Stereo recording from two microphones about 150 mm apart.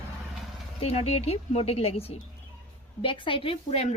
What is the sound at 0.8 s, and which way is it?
A woman's voice, 45° left (ahead or behind).